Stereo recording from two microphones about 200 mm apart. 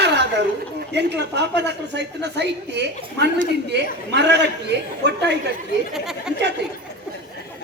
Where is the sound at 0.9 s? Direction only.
60° right (ahead or behind).